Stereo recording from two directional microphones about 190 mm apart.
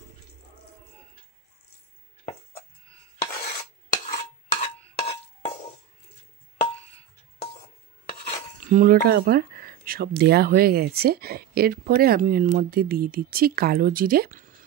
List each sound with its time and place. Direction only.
3.9 s stir: 40° left (ahead or behind)
6.6 s a sound: 30° left (ahead or behind)
8.6 s speech: 45° right (ahead or behind)